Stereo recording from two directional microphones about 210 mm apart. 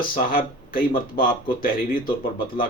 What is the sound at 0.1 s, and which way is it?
Speech, 45° left (ahead or behind).